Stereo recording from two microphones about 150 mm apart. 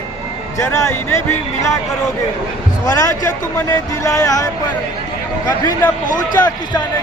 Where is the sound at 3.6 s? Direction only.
15° left (ahead or behind).